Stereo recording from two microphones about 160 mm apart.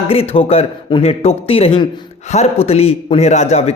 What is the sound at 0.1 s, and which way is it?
A man's voice, 35° left (ahead or behind).